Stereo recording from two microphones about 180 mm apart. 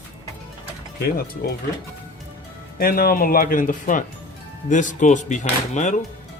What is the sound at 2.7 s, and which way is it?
Speech, 55° left (ahead or behind).